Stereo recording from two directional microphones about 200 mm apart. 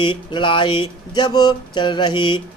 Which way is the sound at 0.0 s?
25° left (ahead or behind).